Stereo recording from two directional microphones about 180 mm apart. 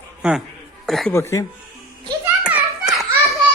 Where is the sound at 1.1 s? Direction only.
15° left (ahead or behind).